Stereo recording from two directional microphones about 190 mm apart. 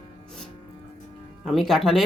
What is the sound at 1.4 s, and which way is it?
Speech, centre (ahead or behind).